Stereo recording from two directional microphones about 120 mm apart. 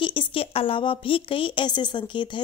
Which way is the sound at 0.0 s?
45° left (ahead or behind).